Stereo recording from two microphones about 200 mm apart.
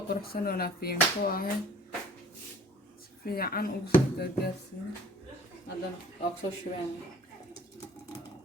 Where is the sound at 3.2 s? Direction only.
50° left (ahead or behind).